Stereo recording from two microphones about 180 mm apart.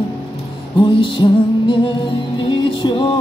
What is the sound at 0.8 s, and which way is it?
Music, 30° left (ahead or behind).